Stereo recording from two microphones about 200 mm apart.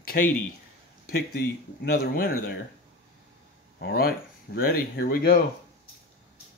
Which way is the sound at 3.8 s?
50° left (ahead or behind).